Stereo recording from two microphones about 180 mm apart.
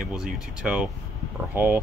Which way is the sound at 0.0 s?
5° right (ahead or behind).